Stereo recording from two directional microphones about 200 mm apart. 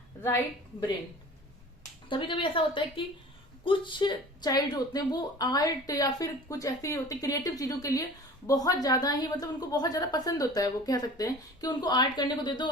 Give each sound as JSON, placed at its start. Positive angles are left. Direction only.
{"t": 2.0, "sound": "a woman's voice", "side_deg": 25}